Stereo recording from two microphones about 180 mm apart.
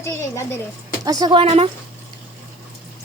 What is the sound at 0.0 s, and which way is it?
Speech, 15° left (ahead or behind).